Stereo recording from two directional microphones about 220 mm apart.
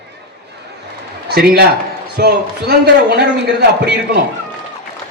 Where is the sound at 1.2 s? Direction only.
45° right (ahead or behind).